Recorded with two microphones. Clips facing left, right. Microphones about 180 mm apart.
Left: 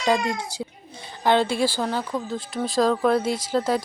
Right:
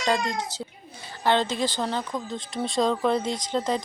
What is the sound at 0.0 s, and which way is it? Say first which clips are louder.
Speech: left 3 dB; 10° left (ahead or behind).